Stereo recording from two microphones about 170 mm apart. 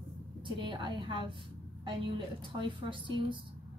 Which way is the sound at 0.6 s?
30° right (ahead or behind).